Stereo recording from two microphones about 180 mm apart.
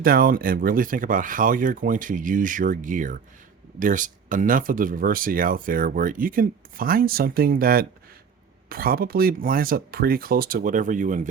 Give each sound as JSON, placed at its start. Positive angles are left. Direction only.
{"t": 0.0, "sound": "speech", "side_deg": -55}